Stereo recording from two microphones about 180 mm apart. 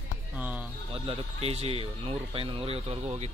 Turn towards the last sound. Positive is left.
turn(degrees=-35)  # may be behind; listen again after turning